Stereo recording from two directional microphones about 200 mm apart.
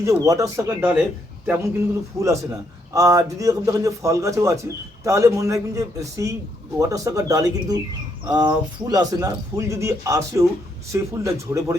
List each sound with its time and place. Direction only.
0.0 s speech: 15° right (ahead or behind)
2.2 s speech: 15° right (ahead or behind)